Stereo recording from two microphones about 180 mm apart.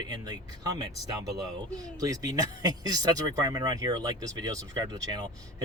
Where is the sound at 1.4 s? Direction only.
20° right (ahead or behind).